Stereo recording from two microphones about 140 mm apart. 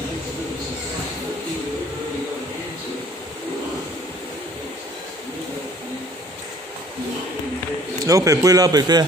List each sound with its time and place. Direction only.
8.1 s a man's voice: 25° right (ahead or behind)